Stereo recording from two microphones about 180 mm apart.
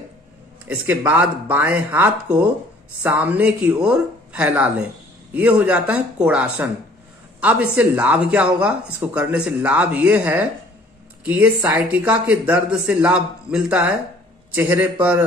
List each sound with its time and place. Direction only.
0.7 s a man's voice: 10° right (ahead or behind)